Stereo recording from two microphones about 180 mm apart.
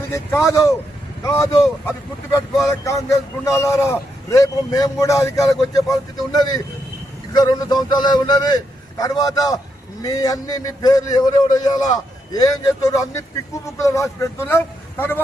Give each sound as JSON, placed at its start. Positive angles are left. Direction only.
{"t": 0.1, "sound": "a man's voice", "side_deg": 15}